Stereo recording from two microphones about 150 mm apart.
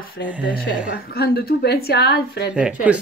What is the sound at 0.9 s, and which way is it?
A woman's voice, 90° left.